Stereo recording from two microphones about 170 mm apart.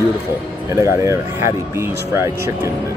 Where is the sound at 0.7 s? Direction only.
15° right (ahead or behind).